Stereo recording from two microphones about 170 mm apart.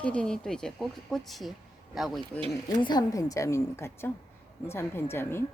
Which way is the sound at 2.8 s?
25° left (ahead or behind).